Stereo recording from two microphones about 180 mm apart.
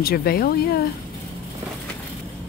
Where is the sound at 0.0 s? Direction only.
60° left (ahead or behind).